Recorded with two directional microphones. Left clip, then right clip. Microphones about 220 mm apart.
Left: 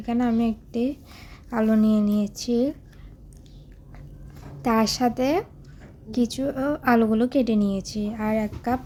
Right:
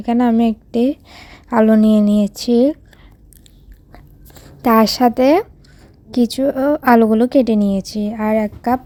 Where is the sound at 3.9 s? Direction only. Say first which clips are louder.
Right 6 dB; 35° right (ahead or behind).